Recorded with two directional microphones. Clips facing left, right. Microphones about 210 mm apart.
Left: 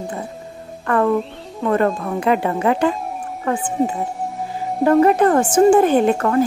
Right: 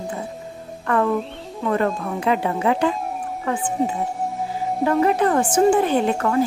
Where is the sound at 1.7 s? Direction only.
50° left (ahead or behind).